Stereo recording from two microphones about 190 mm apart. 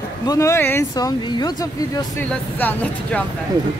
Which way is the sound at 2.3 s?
10° left (ahead or behind).